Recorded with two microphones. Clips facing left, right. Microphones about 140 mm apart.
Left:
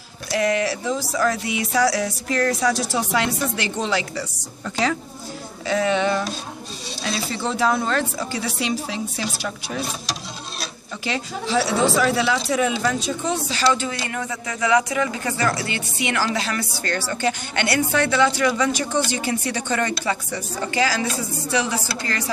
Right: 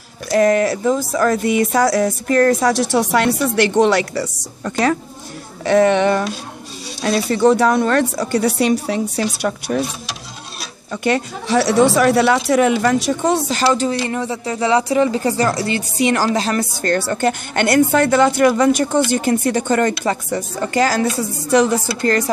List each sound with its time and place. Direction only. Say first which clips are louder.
0.3 s speech: right 7 dB; 45° right (ahead or behind)
3.0 s speech: right 6 dB; 70° right (ahead or behind)
11.1 s speech: right 7 dB; 60° right (ahead or behind)